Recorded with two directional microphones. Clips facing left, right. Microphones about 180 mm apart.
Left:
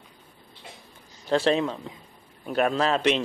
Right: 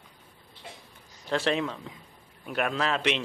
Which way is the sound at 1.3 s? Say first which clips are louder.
Left 5 dB; 30° left (ahead or behind).